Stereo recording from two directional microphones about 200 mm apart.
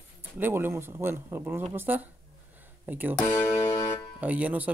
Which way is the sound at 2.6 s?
10° right (ahead or behind).